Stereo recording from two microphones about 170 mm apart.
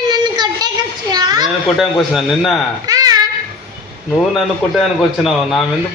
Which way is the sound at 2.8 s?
20° right (ahead or behind).